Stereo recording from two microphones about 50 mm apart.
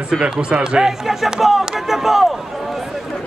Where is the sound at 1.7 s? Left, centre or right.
Centre.